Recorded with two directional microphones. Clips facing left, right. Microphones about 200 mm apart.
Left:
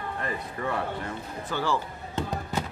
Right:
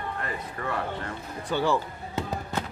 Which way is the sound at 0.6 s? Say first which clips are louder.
Left 2 dB; 15° left (ahead or behind).